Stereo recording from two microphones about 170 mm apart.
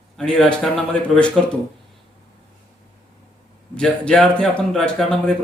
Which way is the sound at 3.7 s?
5° left (ahead or behind).